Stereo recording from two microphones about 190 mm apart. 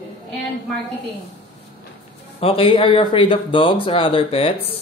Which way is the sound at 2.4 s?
30° left (ahead or behind).